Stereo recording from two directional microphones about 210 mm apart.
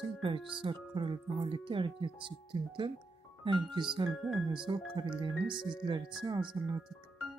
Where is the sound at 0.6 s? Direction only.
25° right (ahead or behind).